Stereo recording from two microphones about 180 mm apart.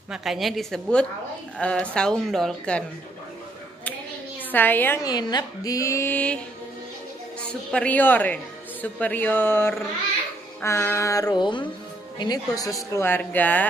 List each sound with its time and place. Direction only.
0.1 s a woman's voice: centre (ahead or behind)
4.5 s speech: 10° left (ahead or behind)
7.7 s speech: 10° left (ahead or behind)